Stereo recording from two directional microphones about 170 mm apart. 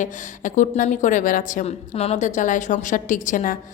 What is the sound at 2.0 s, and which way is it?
A woman's voice, 40° left (ahead or behind).